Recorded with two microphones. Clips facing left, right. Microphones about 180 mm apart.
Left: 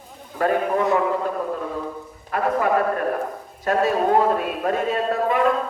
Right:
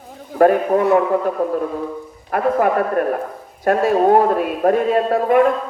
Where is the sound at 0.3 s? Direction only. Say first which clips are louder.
Right 7 dB; 55° right (ahead or behind).